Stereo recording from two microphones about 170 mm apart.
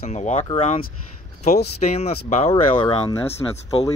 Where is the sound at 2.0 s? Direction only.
40° left (ahead or behind).